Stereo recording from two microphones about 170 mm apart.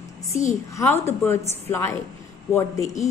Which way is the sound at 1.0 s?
15° left (ahead or behind).